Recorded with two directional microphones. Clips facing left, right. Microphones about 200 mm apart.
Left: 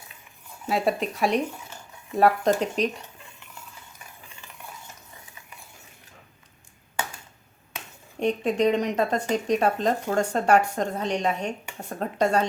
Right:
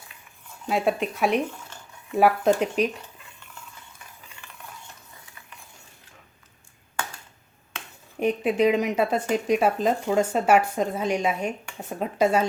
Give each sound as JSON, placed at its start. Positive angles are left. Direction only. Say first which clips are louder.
{"t": 0.7, "sound": "speech", "louder": "right 1 dB", "side_deg": 0}
{"t": 8.2, "sound": "speech", "louder": "right 1 dB", "side_deg": -5}